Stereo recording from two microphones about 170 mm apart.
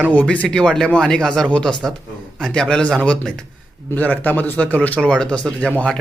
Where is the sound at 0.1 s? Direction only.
5° left (ahead or behind).